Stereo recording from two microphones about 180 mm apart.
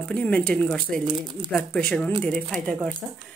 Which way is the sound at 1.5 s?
5° left (ahead or behind).